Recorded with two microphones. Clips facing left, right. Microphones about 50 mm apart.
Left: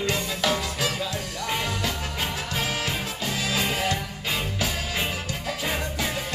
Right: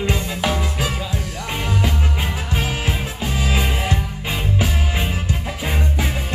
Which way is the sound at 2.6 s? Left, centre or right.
Right.